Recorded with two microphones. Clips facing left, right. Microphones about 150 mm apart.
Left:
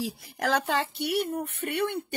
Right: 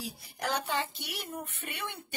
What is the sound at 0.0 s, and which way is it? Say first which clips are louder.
Speech: left 7 dB; 90° left.